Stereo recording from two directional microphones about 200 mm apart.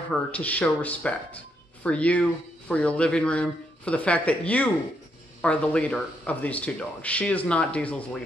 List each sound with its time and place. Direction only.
0.1 s speech: 5° left (ahead or behind)